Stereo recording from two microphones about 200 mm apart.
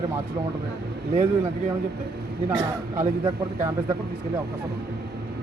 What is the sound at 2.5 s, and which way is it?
Speech, 20° right (ahead or behind).